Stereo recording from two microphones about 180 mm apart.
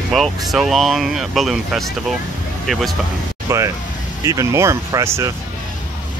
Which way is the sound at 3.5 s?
15° right (ahead or behind).